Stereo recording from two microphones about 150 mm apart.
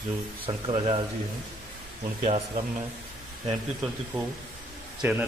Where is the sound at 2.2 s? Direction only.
45° right (ahead or behind).